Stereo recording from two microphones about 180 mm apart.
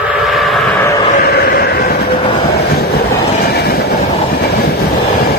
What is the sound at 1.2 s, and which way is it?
Vehicle, 60° left (ahead or behind).